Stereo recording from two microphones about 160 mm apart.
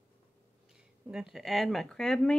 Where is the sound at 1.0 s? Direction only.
5° right (ahead or behind).